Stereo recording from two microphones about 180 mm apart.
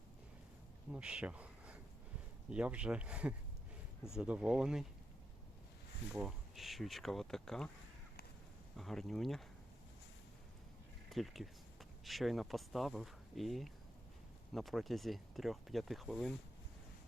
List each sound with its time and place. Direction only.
0.9 s speech: 5° right (ahead or behind)
6.1 s speech: centre (ahead or behind)
8.7 s speech: centre (ahead or behind)
11.1 s speech: centre (ahead or behind)